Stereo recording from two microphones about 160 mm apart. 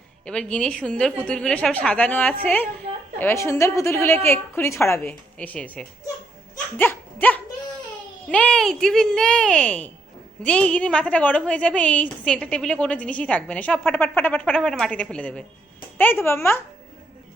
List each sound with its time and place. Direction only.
0.3 s a woman's voice: 5° left (ahead or behind)
6.7 s goat: 10° left (ahead or behind)
8.3 s a woman's voice: 5° left (ahead or behind)